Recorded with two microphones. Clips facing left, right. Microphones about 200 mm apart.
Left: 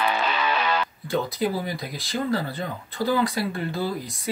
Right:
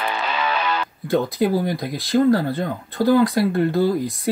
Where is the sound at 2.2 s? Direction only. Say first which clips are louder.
Right 9 dB; 50° right (ahead or behind).